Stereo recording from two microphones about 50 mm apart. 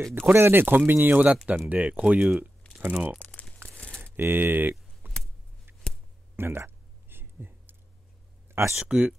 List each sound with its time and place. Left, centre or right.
0.1 s speech: right
3.2 s crumpling: left
4.0 s typing: right
6.3 s a sound: right
8.5 s a sound: right
8.8 s speech: right